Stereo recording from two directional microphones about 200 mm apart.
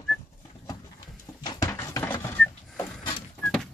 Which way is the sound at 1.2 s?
20° left (ahead or behind).